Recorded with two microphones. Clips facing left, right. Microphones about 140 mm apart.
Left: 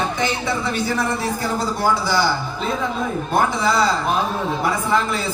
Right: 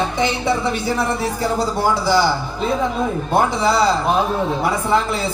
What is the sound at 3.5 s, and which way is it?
Speech, 30° right (ahead or behind).